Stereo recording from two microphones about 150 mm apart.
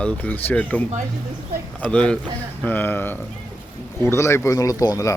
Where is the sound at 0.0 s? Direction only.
10° left (ahead or behind).